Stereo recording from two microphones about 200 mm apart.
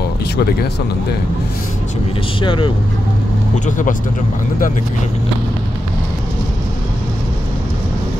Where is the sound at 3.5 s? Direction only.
40° left (ahead or behind).